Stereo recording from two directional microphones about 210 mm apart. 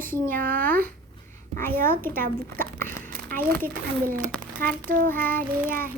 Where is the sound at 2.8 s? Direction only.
10° left (ahead or behind).